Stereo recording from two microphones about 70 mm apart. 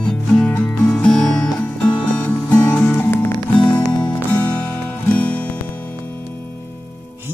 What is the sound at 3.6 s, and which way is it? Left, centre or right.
Music, centre.